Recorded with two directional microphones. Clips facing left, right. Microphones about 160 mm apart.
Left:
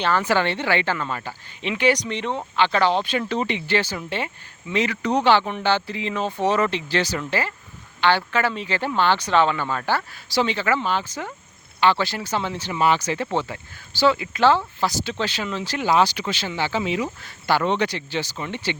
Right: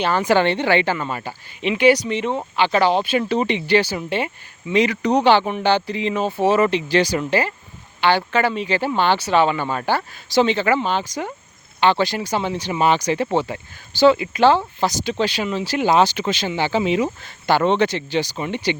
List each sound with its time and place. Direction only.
0.0 s speech: 15° right (ahead or behind)
15.9 s speech: 20° right (ahead or behind)